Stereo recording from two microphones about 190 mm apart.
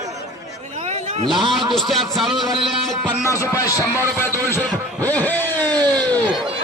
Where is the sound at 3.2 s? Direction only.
15° left (ahead or behind).